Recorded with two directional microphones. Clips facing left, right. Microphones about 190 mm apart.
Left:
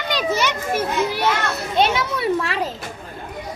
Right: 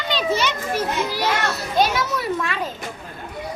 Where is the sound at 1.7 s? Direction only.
25° left (ahead or behind).